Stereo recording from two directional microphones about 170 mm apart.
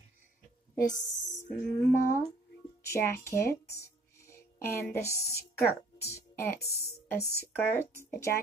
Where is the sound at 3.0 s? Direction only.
15° left (ahead or behind).